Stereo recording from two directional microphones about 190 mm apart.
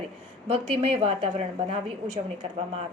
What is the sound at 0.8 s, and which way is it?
Speech, 35° right (ahead or behind).